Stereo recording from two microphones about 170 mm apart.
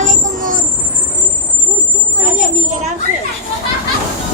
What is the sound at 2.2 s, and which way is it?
Children playing, 50° right (ahead or behind).